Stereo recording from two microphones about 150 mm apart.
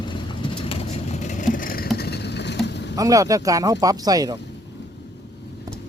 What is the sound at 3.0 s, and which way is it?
Speech, 25° right (ahead or behind).